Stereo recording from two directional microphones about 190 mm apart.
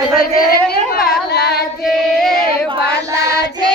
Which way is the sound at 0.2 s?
50° left (ahead or behind).